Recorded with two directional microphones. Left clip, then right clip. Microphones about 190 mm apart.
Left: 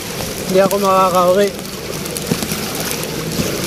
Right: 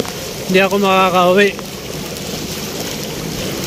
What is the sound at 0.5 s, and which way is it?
Speech, 50° right (ahead or behind).